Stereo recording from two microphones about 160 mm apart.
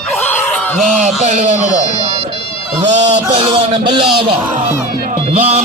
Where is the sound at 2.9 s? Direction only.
45° right (ahead or behind).